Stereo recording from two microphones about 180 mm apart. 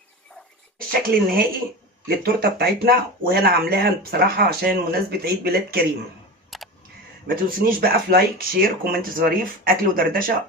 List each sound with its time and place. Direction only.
0.9 s speech: 55° right (ahead or behind)
6.5 s camera: centre (ahead or behind)
7.3 s speech: 55° right (ahead or behind)